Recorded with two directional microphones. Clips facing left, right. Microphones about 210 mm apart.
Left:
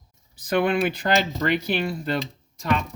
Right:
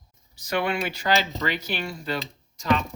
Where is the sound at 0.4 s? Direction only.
50° left (ahead or behind).